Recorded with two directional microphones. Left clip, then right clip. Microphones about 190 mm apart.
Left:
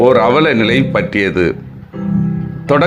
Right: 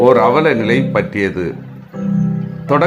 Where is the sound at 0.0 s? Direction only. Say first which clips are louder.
Left 1 dB; 15° left (ahead or behind).